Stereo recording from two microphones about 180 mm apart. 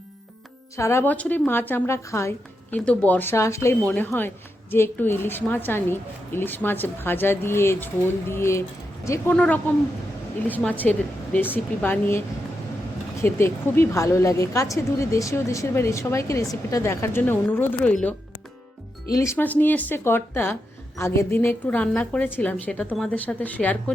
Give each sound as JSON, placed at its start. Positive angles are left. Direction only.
{"t": 0.8, "sound": "a woman's voice", "side_deg": 15}
{"t": 9.3, "sound": "a woman's voice", "side_deg": 5}
{"t": 13.2, "sound": "a woman's voice", "side_deg": 15}
{"t": 19.1, "sound": "a woman's voice", "side_deg": 15}